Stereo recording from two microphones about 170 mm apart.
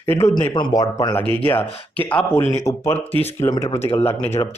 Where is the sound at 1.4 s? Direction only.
10° left (ahead or behind).